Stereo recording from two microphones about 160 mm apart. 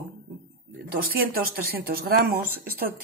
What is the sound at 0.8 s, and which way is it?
Speech, 70° right (ahead or behind).